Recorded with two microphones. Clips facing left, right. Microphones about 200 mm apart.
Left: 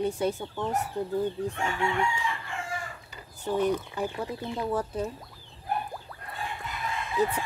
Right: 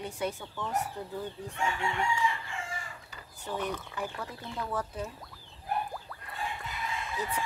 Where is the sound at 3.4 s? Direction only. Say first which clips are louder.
Left 9 dB; 30° left (ahead or behind).